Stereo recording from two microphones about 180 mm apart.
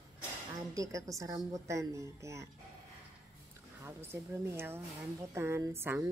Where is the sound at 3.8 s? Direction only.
15° right (ahead or behind).